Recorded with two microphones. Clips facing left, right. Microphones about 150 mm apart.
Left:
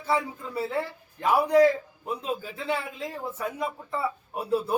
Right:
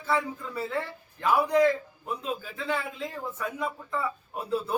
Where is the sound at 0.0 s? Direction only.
35° left (ahead or behind).